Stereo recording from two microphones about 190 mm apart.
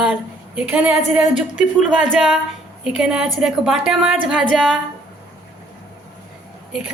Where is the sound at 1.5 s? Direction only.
40° left (ahead or behind).